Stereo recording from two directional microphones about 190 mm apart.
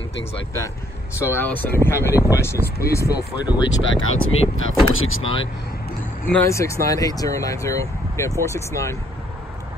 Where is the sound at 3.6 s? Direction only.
85° left.